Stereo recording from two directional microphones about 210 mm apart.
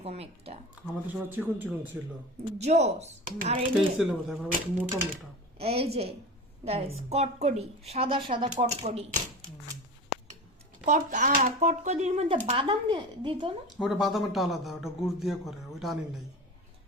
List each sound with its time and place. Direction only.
0.0 s a woman's voice: 30° right (ahead or behind)
1.0 s speech: 10° right (ahead or behind)
2.6 s speech: 30° right (ahead or behind)
3.9 s a man's voice: centre (ahead or behind)
5.5 s a woman's voice: 30° right (ahead or behind)
10.8 s speech: 35° right (ahead or behind)
13.7 s a man's voice: centre (ahead or behind)